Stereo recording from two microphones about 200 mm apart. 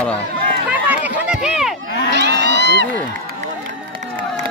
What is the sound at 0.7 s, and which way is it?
Run, 10° right (ahead or behind).